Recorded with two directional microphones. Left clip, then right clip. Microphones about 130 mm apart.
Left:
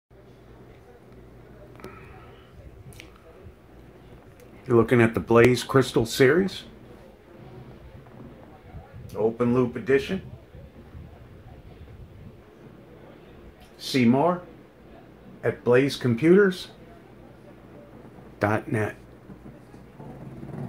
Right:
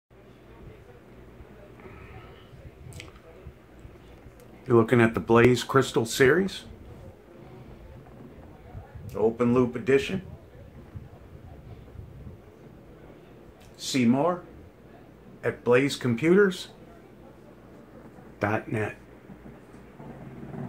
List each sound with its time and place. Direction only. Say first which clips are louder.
4.6 s speech: left 1 dB; 15° left (ahead or behind); by 6.6 s 35° left (ahead or behind)
9.4 s speech: even; 55° left (ahead or behind)
14.0 s speech: left 3 dB; 45° left (ahead or behind)
15.4 s speech: left 2 dB; 45° left (ahead or behind); by 16.6 s 25° left (ahead or behind)
18.4 s speech: left 3 dB; 15° left (ahead or behind)